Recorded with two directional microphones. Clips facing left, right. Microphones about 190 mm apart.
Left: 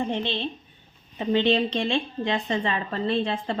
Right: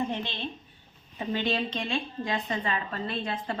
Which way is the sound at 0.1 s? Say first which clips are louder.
Left 6 dB; 25° left (ahead or behind).